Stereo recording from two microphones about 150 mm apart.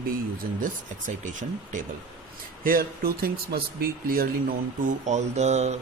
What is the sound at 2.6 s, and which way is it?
Speech, 75° right (ahead or behind).